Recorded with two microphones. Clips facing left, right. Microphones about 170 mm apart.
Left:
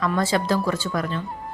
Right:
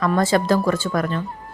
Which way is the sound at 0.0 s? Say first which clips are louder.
Right 4 dB; 50° right (ahead or behind).